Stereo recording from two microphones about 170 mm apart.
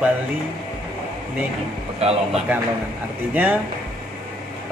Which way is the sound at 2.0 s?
35° right (ahead or behind).